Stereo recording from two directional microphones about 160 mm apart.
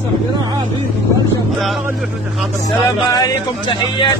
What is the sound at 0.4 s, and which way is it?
Vehicle, 25° right (ahead or behind).